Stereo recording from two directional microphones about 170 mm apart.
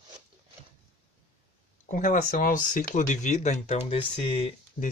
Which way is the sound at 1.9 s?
50° left (ahead or behind).